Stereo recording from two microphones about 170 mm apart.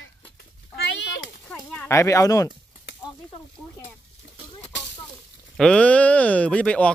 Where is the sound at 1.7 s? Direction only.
15° left (ahead or behind).